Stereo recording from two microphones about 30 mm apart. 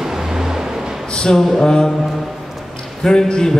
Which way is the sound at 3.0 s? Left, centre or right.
Left.